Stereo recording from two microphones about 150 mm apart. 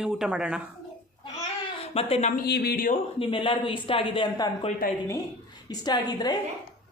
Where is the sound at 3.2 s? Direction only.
35° left (ahead or behind).